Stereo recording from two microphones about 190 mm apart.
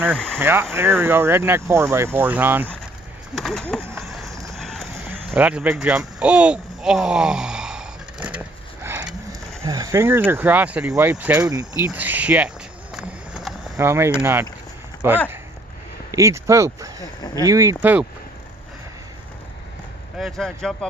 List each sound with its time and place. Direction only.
0.4 s speech: 10° right (ahead or behind)
3.3 s a sound: centre (ahead or behind)
5.3 s speech: 5° right (ahead or behind)
11.8 s a sound: 10° right (ahead or behind)
13.7 s speech: 15° right (ahead or behind)
16.1 s speech: 15° right (ahead or behind)
20.2 s speech: centre (ahead or behind)